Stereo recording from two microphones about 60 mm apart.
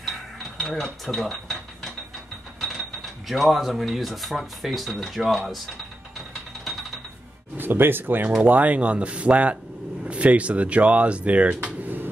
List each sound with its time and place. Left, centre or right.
0.0 s mechanisms: centre
3.3 s speech: centre
7.5 s speech: right